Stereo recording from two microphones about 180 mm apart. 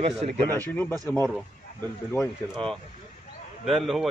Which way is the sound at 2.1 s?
5° left (ahead or behind).